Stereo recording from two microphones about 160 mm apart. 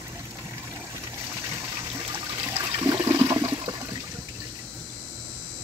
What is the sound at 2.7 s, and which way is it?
Toilet flush, 25° right (ahead or behind).